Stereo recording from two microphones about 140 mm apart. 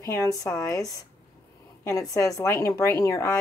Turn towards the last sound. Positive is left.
turn(degrees=25)  # may be behind; listen again after turning